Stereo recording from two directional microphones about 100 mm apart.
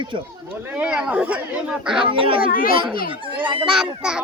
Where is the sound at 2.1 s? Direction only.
60° right (ahead or behind).